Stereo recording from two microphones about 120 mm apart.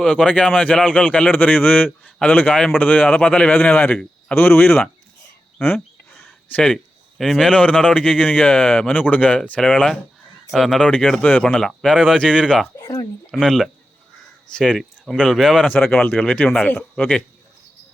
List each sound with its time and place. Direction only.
0.0 s a man's voice: 10° left (ahead or behind)
5.6 s a sound: 20° left (ahead or behind)
7.2 s a man's voice: centre (ahead or behind)
12.8 s speech: 30° left (ahead or behind)
13.3 s a man's voice: centre (ahead or behind)